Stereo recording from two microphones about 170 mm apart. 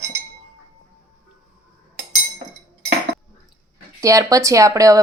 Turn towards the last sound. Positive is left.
turn(degrees=-20)  # may be behind; listen again after turning